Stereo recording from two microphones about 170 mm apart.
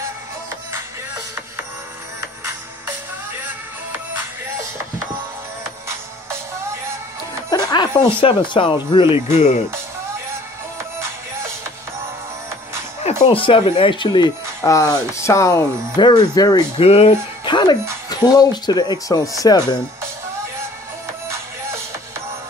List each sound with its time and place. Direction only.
0.7 s music: 15° right (ahead or behind)
7.4 s speech: 20° left (ahead or behind)
13.2 s speech: 30° left (ahead or behind)
16.7 s speech: 35° left (ahead or behind)